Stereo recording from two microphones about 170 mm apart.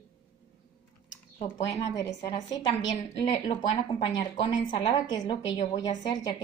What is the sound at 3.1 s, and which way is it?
A woman's voice, 35° left (ahead or behind).